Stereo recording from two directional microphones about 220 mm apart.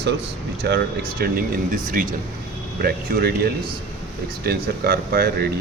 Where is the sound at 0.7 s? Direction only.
50° right (ahead or behind).